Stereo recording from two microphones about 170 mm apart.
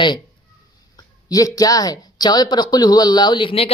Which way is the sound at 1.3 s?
20° left (ahead or behind).